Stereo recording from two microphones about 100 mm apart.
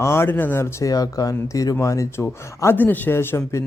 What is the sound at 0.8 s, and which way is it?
Speech, 35° left (ahead or behind).